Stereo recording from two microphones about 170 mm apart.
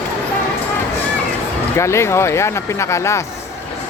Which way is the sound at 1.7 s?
15° left (ahead or behind).